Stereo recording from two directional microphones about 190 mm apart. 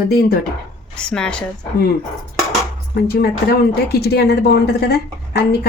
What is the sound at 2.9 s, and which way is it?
A woman's voice, 55° left (ahead or behind).